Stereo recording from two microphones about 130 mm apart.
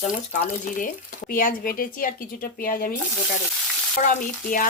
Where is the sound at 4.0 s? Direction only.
85° left.